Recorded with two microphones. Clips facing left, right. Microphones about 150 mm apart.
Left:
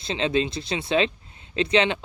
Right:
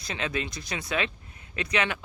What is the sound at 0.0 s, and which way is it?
Speech, 25° left (ahead or behind).